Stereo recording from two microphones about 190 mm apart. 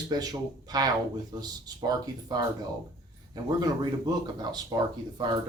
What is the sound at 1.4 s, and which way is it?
Speech, 20° right (ahead or behind).